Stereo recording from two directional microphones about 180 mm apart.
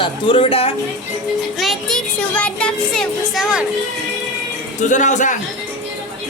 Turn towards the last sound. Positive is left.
turn(degrees=45)  # may be behind; listen again after turning